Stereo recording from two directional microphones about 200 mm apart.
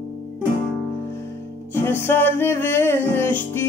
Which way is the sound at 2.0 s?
10° left (ahead or behind).